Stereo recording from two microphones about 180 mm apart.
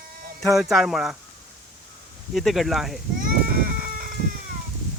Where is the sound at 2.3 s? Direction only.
Centre (ahead or behind).